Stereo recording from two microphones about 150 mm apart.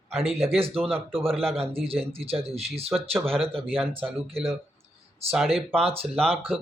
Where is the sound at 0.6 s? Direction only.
40° right (ahead or behind).